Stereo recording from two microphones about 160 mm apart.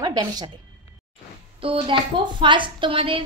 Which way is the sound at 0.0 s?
25° right (ahead or behind).